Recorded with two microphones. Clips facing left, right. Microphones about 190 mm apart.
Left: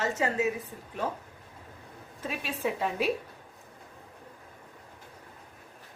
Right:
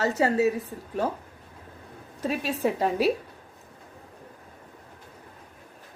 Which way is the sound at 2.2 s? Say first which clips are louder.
Right 6 dB; 40° right (ahead or behind).